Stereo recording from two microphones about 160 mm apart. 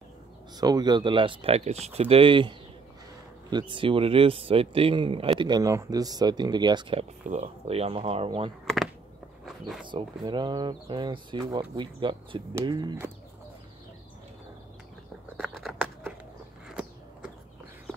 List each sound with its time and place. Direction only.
0.6 s speech: 25° right (ahead or behind)
7.2 s speech: 40° right (ahead or behind)
9.8 s speech: 30° right (ahead or behind)
15.3 s a sound: centre (ahead or behind)
16.6 s walk: 5° right (ahead or behind)